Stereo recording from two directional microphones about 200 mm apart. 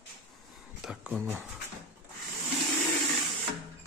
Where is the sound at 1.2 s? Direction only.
10° right (ahead or behind).